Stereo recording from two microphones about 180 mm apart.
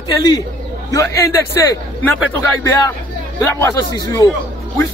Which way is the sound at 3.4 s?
15° left (ahead or behind).